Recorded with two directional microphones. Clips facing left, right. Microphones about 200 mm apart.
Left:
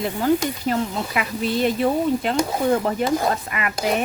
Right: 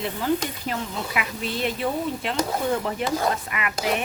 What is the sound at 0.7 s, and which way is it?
Speech, 40° left (ahead or behind).